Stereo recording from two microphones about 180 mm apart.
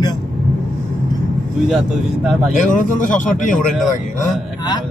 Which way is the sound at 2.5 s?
45° left (ahead or behind).